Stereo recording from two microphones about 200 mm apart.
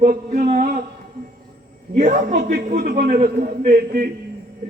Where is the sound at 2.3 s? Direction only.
50° right (ahead or behind).